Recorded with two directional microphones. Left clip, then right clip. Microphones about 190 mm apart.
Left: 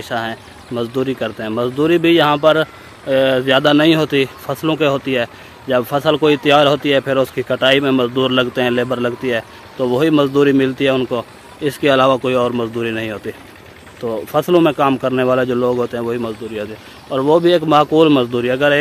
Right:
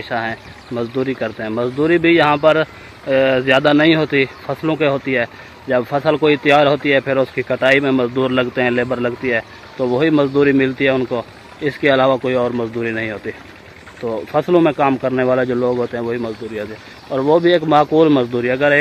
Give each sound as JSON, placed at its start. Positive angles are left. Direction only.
{"t": 0.1, "sound": "speech", "side_deg": 15}